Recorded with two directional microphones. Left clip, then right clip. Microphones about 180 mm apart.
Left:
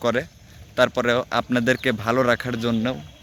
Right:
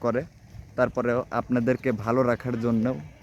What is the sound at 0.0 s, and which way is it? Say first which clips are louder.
Speech: left 4 dB; 15° left (ahead or behind).